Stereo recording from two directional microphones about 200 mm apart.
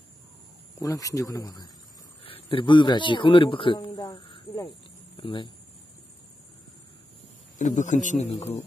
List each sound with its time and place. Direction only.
0.7 s speech: 15° left (ahead or behind)
2.2 s a sound: 25° left (ahead or behind)
5.1 s speech: 25° left (ahead or behind)
7.5 s a man's voice: 40° left (ahead or behind)